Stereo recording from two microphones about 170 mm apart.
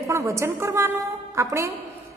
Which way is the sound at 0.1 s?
15° right (ahead or behind).